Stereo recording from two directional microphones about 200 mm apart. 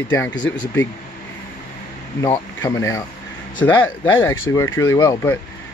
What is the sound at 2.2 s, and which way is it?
Speech, 15° left (ahead or behind).